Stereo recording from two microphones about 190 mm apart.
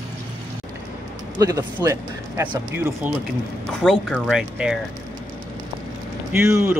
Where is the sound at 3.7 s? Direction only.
Centre (ahead or behind).